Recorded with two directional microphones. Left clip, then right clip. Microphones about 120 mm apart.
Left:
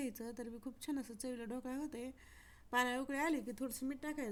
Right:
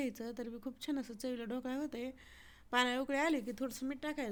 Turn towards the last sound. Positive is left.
turn(degrees=-25)  # may be behind; listen again after turning